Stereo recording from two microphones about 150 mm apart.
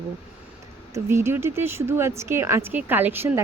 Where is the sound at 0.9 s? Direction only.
15° right (ahead or behind).